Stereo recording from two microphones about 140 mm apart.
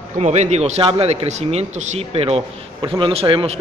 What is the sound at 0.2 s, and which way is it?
A man's voice, 55° right (ahead or behind).